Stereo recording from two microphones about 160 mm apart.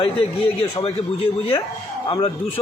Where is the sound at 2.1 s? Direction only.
35° left (ahead or behind).